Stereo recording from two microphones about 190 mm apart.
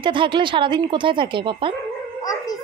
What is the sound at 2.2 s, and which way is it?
Howl, 20° left (ahead or behind).